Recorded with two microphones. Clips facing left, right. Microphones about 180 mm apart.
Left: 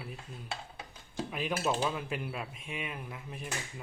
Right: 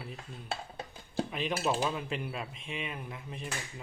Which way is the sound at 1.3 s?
10° left (ahead or behind).